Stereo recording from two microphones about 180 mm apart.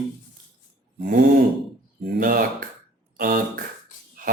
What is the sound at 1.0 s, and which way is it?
A man's voice, 50° right (ahead or behind).